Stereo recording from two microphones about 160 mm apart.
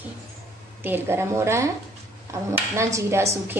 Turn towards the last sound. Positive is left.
turn(degrees=-15)  # may be behind; listen again after turning